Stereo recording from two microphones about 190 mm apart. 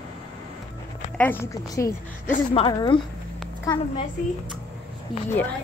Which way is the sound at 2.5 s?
25° left (ahead or behind).